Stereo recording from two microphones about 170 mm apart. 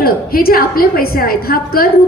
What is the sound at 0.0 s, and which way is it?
A woman's voice, 60° left (ahead or behind).